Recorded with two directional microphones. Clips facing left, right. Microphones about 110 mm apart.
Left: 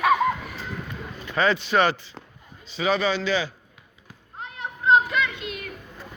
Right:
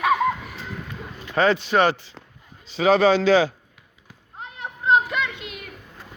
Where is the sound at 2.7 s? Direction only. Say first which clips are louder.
Right 6 dB; 90° right.